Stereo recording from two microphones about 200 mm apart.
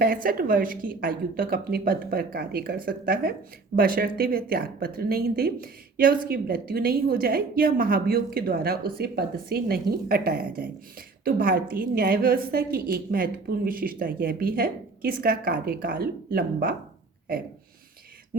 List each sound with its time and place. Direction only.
0.0 s a woman's voice: 45° right (ahead or behind)